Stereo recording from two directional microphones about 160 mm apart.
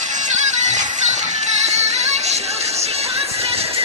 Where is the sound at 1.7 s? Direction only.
45° right (ahead or behind).